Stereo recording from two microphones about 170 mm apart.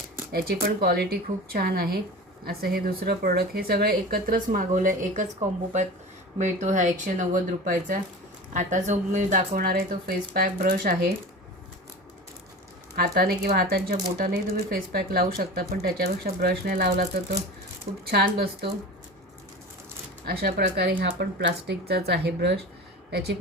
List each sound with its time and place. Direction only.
0.3 s speech: 65° right (ahead or behind)
6.4 s speech: 45° right (ahead or behind)
13.0 s speech: 60° right (ahead or behind)
20.2 s speech: 70° right (ahead or behind)